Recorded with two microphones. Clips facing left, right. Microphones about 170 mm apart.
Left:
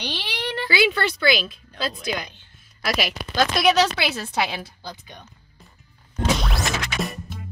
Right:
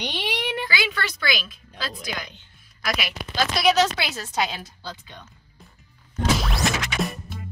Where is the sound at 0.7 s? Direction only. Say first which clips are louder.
Left 7 dB; 30° left (ahead or behind).